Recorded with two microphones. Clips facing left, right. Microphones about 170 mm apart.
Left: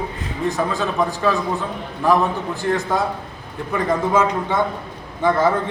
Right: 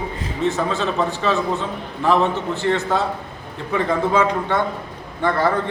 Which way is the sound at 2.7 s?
15° left (ahead or behind).